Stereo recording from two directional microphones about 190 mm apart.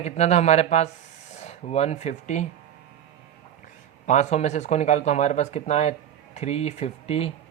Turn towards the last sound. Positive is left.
turn(degrees=30)  # may be behind; listen again after turning